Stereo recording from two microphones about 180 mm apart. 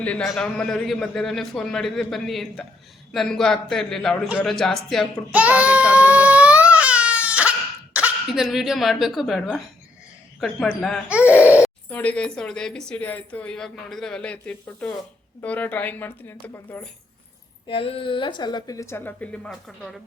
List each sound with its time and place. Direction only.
0.0 s a man's voice: 5° left (ahead or behind)
11.9 s a woman's voice: 5° left (ahead or behind)
17.7 s a woman's voice: 30° left (ahead or behind); by 20.0 s centre (ahead or behind)